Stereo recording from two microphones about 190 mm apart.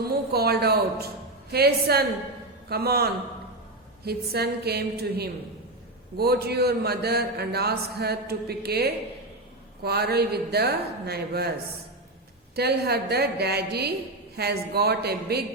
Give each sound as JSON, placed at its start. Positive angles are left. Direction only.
{"t": 0.0, "sound": "a man's voice", "side_deg": -55}
{"t": 12.5, "sound": "a man's voice", "side_deg": -55}